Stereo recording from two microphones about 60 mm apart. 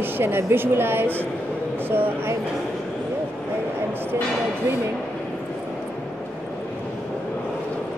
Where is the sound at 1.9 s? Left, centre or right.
Right.